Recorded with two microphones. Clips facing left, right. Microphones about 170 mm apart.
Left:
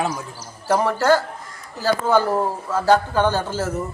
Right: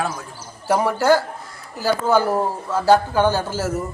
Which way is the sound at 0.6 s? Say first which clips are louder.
Right 1 dB; 10° right (ahead or behind).